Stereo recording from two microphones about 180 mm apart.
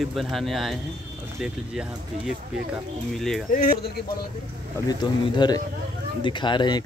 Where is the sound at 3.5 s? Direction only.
55° left (ahead or behind).